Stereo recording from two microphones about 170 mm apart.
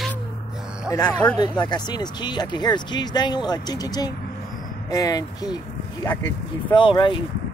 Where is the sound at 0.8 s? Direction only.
20° left (ahead or behind).